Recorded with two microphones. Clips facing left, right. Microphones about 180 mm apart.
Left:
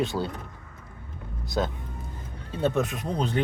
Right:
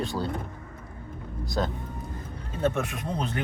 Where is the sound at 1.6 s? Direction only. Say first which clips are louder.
Left 1 dB; 10° left (ahead or behind).